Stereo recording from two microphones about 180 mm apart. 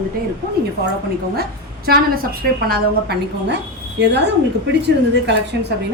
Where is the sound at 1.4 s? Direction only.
55° right (ahead or behind).